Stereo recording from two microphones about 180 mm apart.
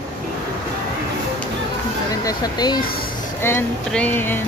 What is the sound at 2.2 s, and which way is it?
Speech, 20° left (ahead or behind).